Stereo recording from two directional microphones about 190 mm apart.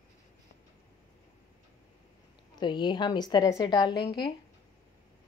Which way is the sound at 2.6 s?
25° left (ahead or behind).